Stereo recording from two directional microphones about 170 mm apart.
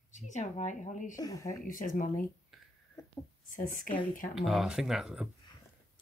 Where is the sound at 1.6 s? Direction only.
55° left (ahead or behind).